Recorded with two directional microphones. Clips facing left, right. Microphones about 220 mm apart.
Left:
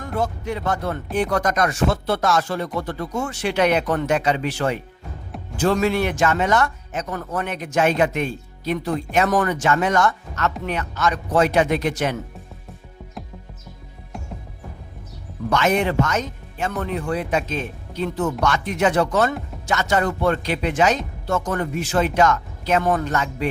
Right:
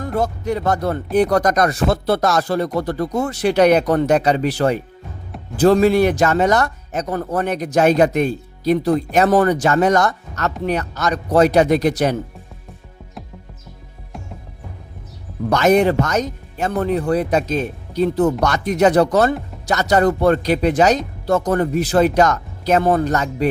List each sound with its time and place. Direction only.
0.0 s speech: 40° right (ahead or behind)
14.1 s music: centre (ahead or behind)
15.4 s speech: 40° right (ahead or behind)